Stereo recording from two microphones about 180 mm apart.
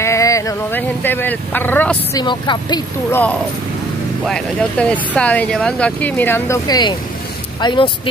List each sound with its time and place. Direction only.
0.0 s speech: 15° left (ahead or behind)
2.1 s speech: 25° left (ahead or behind)
3.1 s speech: 10° left (ahead or behind); by 7.9 s 25° left (ahead or behind)